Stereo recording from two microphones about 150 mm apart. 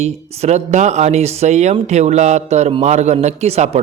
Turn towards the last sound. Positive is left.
turn(degrees=-45)  # may be behind; listen again after turning